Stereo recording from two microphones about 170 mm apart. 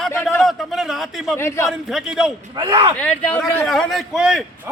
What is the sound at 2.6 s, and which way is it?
Speech, 30° right (ahead or behind).